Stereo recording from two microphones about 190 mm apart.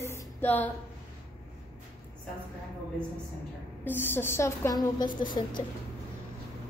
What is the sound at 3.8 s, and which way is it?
A woman's voice, 10° left (ahead or behind).